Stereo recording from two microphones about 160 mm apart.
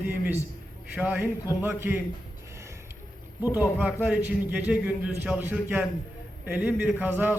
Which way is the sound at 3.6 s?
10° right (ahead or behind).